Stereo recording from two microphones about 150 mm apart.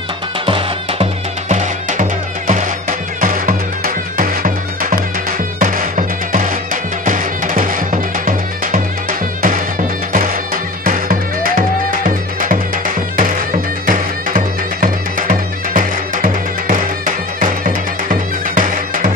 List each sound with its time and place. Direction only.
0.5 s music: 35° right (ahead or behind)
1.5 s music: 55° right (ahead or behind)